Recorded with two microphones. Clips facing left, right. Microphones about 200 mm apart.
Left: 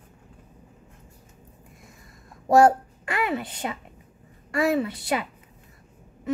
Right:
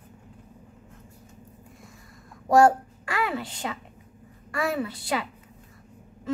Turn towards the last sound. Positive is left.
turn(degrees=20)  # may be behind; listen again after turning